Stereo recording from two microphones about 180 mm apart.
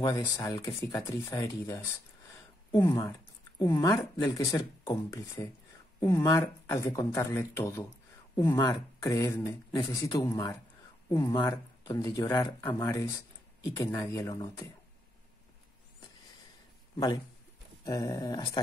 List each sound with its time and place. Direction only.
0.0 s speech: 20° left (ahead or behind)
2.9 s speech: 25° left (ahead or behind)
17.8 s speech: 20° left (ahead or behind)